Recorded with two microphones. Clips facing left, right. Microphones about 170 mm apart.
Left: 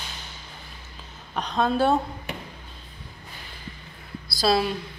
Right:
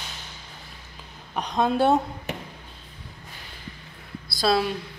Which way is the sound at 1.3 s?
15° right (ahead or behind).